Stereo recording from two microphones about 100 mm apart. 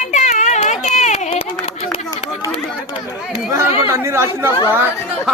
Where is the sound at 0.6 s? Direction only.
90° left.